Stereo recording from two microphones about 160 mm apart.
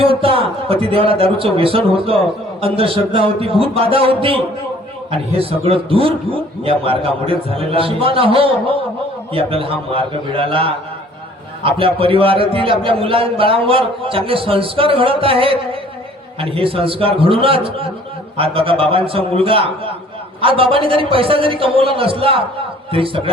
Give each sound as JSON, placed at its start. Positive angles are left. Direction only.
{"t": 0.0, "sound": "a man's voice", "side_deg": -35}